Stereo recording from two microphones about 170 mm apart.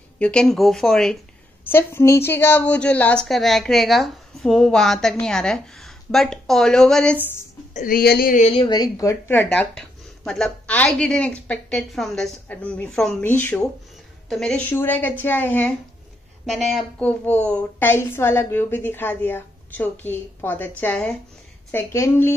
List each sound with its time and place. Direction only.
0.2 s a woman's voice: 5° left (ahead or behind)
1.6 s a woman's voice: 15° left (ahead or behind)
7.7 s speech: 55° left (ahead or behind)
8.5 s a woman's voice: 25° left (ahead or behind); by 15.7 s 10° left (ahead or behind)
16.4 s a woman's voice: centre (ahead or behind)